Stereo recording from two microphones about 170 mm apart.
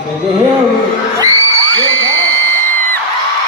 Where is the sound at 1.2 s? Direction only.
20° right (ahead or behind).